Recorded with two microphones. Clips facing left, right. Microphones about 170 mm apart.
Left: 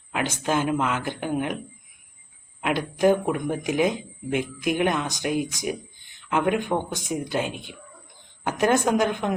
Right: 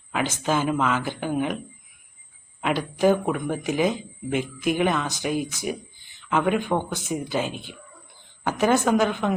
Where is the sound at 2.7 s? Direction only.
5° right (ahead or behind).